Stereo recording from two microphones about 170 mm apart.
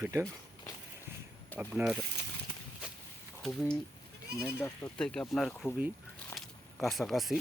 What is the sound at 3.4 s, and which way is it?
Speech, 5° left (ahead or behind).